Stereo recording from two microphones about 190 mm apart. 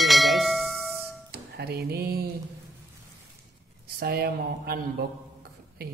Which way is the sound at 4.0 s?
55° right (ahead or behind).